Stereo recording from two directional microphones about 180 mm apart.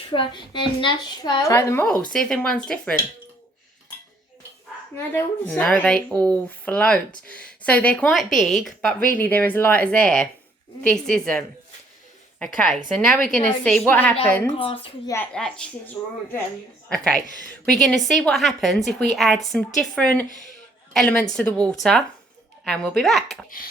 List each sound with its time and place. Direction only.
0.1 s a woman's voice: 25° left (ahead or behind); by 2.9 s 5° left (ahead or behind)
4.9 s speech: 10° left (ahead or behind)
14.6 s a woman's voice: 30° left (ahead or behind)
15.0 s speech: 15° left (ahead or behind)
16.0 s speech: 15° left (ahead or behind)
16.9 s speech: 5° left (ahead or behind)
17.2 s a woman's voice: 45° left (ahead or behind)
17.7 s speech: centre (ahead or behind)